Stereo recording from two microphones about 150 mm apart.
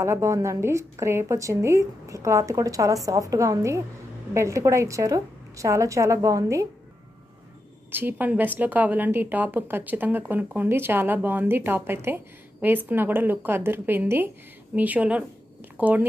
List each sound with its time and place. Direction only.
0.0 s a woman's voice: 20° right (ahead or behind)
7.9 s speech: 15° right (ahead or behind)